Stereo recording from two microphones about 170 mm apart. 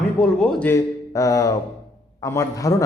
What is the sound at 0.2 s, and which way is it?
Speech, 5° left (ahead or behind).